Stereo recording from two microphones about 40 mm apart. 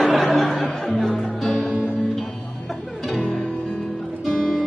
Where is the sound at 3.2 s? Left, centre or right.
Centre.